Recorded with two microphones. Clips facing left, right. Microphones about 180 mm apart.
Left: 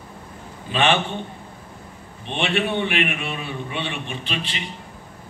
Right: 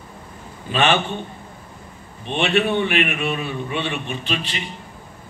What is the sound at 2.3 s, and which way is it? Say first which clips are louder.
A man's voice: right 4 dB; 45° right (ahead or behind).